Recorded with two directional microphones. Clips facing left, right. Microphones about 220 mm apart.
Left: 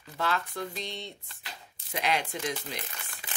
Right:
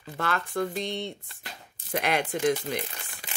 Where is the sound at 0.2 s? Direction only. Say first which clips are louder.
Right 3 dB; 55° right (ahead or behind).